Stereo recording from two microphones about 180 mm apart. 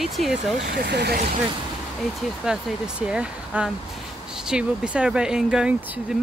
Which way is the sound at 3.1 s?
5° right (ahead or behind).